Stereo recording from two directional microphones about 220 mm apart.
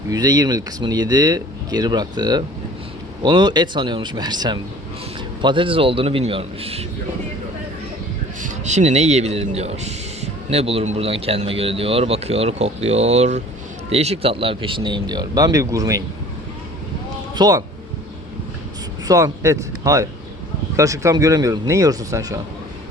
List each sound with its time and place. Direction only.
0.1 s speech: 15° right (ahead or behind)
8.4 s speech: 35° right (ahead or behind); by 16.0 s 15° right (ahead or behind)
17.3 s speech: 20° right (ahead or behind)
19.0 s speech: 15° right (ahead or behind)